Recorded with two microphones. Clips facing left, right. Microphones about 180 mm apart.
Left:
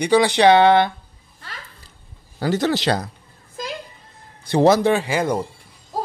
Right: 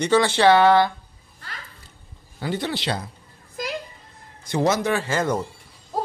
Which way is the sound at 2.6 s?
40° left (ahead or behind).